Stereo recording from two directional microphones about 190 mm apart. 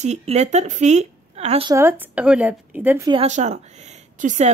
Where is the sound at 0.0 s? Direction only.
35° right (ahead or behind).